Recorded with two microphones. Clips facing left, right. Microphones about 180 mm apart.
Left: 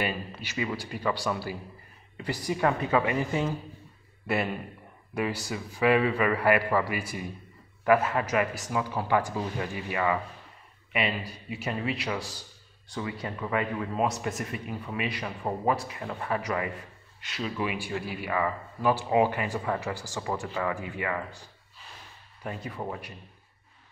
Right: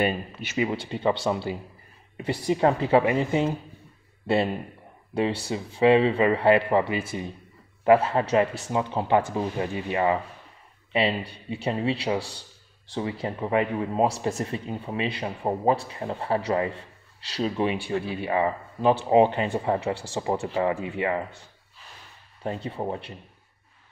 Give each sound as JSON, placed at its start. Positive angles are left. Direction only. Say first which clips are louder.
{"t": 0.0, "sound": "a man's voice", "louder": "right 6 dB", "side_deg": -25}